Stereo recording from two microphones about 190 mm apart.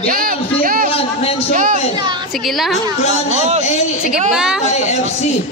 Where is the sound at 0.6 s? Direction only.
50° right (ahead or behind).